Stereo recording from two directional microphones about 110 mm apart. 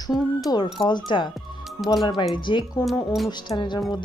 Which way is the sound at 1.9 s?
40° left (ahead or behind).